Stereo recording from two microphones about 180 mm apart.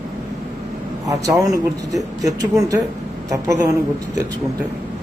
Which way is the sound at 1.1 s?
20° right (ahead or behind).